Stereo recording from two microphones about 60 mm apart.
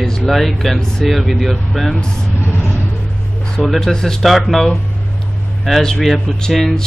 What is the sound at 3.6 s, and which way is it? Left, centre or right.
Speech, centre.